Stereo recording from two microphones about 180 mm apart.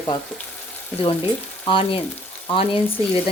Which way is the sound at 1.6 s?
30° left (ahead or behind).